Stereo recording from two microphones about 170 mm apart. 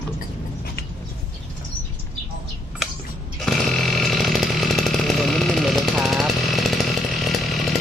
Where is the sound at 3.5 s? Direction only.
5° left (ahead or behind).